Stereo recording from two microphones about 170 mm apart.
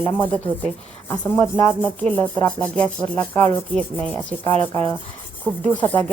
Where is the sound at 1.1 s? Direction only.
10° left (ahead or behind).